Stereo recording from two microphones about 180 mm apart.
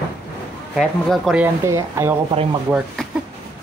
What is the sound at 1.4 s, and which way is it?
Speech, 15° right (ahead or behind).